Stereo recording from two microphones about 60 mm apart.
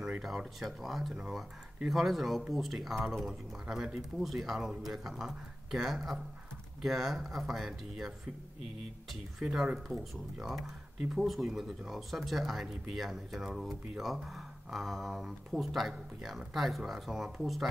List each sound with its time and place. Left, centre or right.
0.6 s speech: centre
1.1 s speech: centre
9.4 s speech: centre
9.9 s speech: right
10.3 s speech: centre